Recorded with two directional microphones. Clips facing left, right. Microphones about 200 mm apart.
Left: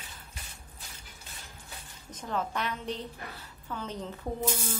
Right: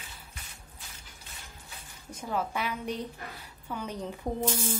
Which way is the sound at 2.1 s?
10° right (ahead or behind).